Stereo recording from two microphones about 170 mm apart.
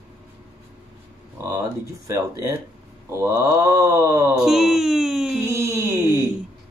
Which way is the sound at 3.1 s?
15° right (ahead or behind).